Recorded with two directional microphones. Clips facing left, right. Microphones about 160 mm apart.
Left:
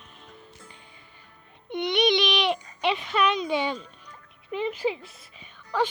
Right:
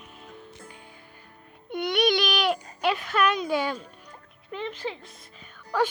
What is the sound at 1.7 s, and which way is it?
Speech, 5° right (ahead or behind).